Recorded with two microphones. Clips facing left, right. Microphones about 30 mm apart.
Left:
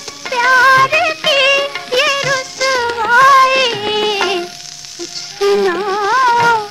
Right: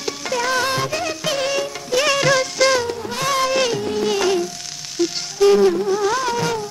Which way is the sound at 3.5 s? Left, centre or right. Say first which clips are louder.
Left 5 dB; left.